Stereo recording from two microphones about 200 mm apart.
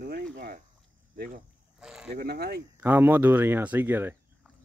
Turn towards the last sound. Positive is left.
turn(degrees=-10)  # may be behind; listen again after turning